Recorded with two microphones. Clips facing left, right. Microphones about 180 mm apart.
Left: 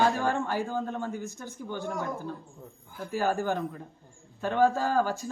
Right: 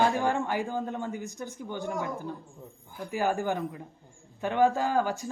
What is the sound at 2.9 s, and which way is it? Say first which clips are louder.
A man's voice: even; 15° right (ahead or behind).